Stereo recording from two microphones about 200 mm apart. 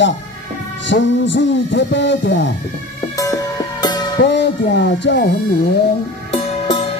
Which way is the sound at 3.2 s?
20° left (ahead or behind).